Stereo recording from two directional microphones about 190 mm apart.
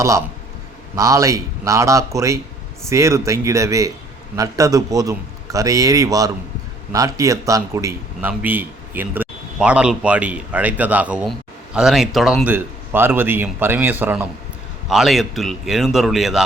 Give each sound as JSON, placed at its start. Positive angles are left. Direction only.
{"t": 0.9, "sound": "a man's voice", "side_deg": -15}